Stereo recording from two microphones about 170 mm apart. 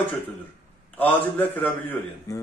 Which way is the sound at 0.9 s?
10° left (ahead or behind).